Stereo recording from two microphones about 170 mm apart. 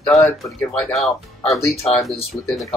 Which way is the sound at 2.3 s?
15° left (ahead or behind).